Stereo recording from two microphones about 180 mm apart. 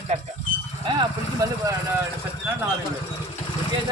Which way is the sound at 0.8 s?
25° right (ahead or behind).